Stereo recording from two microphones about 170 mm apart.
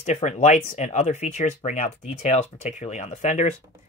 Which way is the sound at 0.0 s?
40° left (ahead or behind).